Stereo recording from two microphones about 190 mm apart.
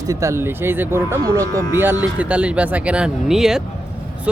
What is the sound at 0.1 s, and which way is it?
Speech, 15° right (ahead or behind).